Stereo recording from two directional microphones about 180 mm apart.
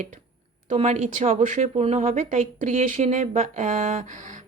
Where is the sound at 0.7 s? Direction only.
40° right (ahead or behind).